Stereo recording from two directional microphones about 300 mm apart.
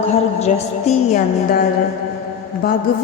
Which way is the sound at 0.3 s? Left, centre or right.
Left.